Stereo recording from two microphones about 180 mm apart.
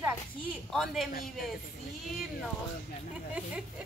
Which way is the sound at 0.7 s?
Centre (ahead or behind).